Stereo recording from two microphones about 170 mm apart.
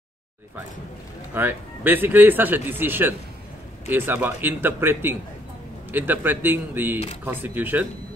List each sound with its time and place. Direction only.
1.3 s a man's voice: 10° right (ahead or behind)